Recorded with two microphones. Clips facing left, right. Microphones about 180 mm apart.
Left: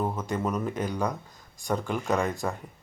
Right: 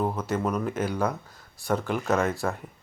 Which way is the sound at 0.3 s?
Centre (ahead or behind).